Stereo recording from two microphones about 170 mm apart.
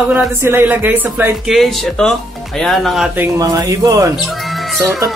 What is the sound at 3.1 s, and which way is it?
Speech, 15° right (ahead or behind).